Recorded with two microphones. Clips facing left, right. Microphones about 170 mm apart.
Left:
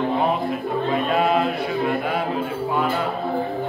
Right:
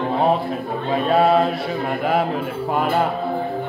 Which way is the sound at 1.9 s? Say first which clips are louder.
Right 3 dB; 55° right (ahead or behind).